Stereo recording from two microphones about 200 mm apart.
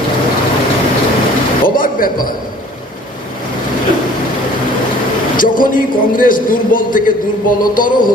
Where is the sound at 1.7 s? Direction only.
45° left (ahead or behind).